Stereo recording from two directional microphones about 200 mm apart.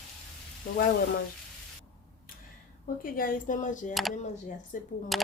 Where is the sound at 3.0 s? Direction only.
45° left (ahead or behind).